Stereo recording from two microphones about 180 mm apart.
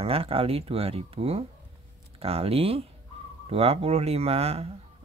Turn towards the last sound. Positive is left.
turn(degrees=-35)  # may be behind; listen again after turning